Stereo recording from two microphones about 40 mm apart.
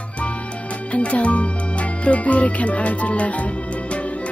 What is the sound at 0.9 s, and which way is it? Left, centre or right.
Music, left.